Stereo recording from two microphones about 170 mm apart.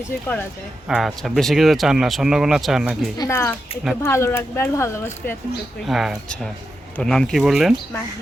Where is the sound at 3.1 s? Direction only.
15° left (ahead or behind).